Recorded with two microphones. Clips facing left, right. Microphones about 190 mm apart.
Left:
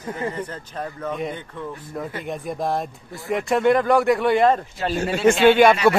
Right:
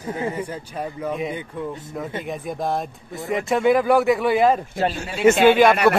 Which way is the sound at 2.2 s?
Centre (ahead or behind).